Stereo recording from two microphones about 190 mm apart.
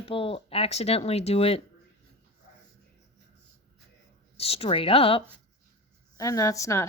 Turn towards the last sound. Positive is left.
turn(degrees=15)  # may be behind; listen again after turning